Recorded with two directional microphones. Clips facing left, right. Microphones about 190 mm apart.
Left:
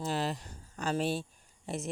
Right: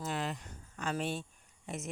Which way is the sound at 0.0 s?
35° left (ahead or behind).